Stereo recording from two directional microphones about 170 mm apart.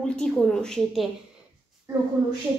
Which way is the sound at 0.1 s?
5° left (ahead or behind).